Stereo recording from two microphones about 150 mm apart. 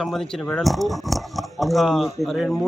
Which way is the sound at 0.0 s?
Centre (ahead or behind).